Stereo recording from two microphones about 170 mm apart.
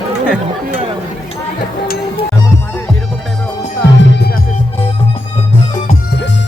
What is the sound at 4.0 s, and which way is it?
Music, 90° left.